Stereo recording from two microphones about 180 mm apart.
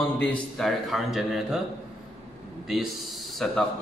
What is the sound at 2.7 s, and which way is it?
Speech, centre (ahead or behind).